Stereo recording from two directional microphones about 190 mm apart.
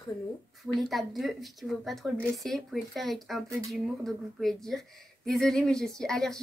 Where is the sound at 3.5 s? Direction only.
15° right (ahead or behind).